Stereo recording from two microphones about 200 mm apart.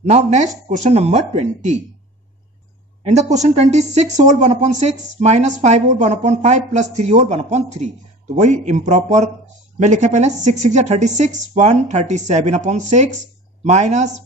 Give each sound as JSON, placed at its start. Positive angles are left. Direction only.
{"t": 0.0, "sound": "speech", "side_deg": -35}
{"t": 3.0, "sound": "speech", "side_deg": -35}